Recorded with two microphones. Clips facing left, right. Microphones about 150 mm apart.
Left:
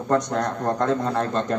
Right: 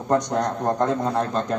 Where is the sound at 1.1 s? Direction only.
5° right (ahead or behind).